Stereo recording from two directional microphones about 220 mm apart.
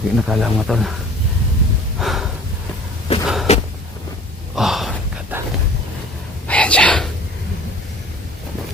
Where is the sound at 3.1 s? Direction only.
25° left (ahead or behind).